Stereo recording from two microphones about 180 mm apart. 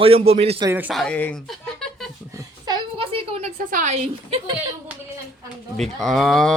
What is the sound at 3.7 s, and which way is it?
Speech, 40° right (ahead or behind).